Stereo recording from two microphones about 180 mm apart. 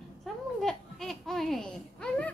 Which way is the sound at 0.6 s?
Centre (ahead or behind).